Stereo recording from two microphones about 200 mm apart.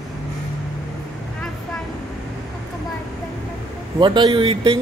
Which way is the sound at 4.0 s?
25° right (ahead or behind).